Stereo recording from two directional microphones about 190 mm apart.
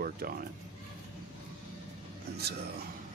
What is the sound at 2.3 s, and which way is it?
Speech, 55° right (ahead or behind).